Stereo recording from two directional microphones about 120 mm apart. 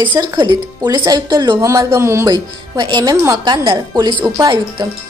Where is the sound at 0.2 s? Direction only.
35° right (ahead or behind).